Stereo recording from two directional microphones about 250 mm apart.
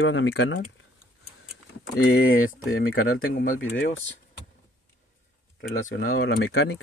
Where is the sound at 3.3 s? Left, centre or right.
Left.